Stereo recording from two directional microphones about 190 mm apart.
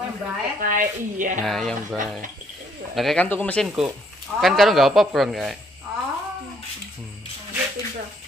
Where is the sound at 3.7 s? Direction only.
5° right (ahead or behind).